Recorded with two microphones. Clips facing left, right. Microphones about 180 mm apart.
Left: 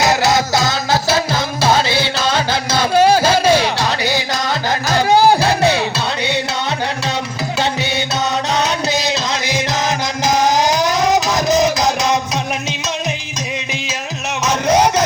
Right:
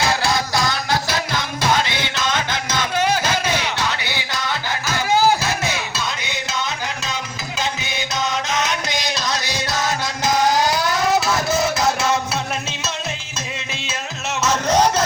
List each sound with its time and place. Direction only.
0.0 s music: 20° left (ahead or behind)
8.5 s music: 30° left (ahead or behind)
14.4 s music: 10° left (ahead or behind)